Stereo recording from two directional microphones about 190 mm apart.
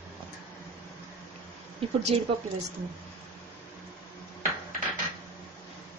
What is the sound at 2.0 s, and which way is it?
Speech, 35° right (ahead or behind).